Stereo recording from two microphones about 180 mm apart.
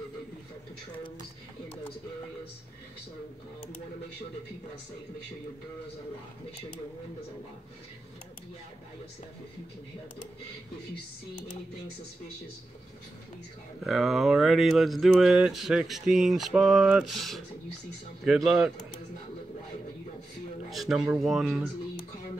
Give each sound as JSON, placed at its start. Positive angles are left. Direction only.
{"t": 13.8, "sound": "speech", "side_deg": 0}
{"t": 20.7, "sound": "speech", "side_deg": 0}